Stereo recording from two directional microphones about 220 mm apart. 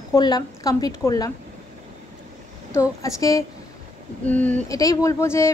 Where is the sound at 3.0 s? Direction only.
15° left (ahead or behind).